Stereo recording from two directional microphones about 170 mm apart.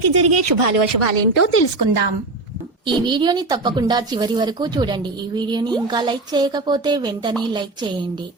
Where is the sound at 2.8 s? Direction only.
30° right (ahead or behind).